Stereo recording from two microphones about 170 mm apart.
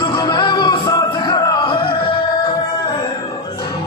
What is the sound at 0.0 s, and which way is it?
Music, 25° left (ahead or behind).